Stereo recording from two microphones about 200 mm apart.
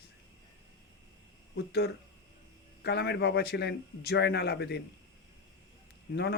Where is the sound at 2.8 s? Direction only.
55° left (ahead or behind).